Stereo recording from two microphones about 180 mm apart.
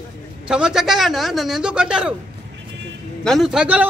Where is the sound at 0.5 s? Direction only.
5° right (ahead or behind).